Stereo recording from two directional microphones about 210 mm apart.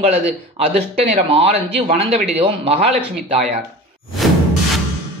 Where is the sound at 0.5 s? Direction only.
30° right (ahead or behind).